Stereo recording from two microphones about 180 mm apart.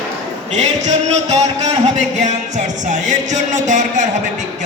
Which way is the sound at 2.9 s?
40° right (ahead or behind).